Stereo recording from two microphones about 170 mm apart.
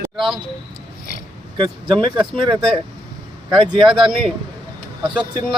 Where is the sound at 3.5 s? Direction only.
30° right (ahead or behind).